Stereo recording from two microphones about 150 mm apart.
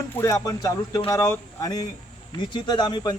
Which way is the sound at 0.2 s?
20° left (ahead or behind).